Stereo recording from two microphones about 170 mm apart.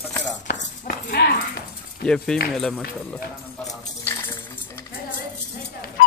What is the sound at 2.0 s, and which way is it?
Speech, 5° left (ahead or behind).